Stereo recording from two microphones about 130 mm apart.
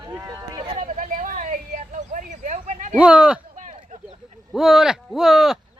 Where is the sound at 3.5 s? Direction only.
75° right (ahead or behind).